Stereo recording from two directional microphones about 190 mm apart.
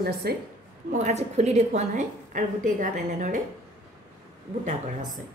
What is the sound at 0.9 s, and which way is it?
A woman's voice, 35° right (ahead or behind).